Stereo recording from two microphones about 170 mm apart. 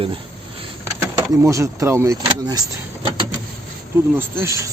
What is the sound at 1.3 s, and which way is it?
Speech, 15° right (ahead or behind).